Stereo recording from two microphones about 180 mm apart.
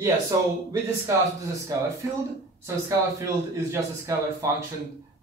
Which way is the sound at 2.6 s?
15° right (ahead or behind).